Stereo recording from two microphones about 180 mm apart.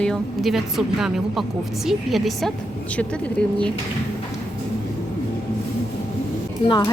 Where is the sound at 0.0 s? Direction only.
Centre (ahead or behind).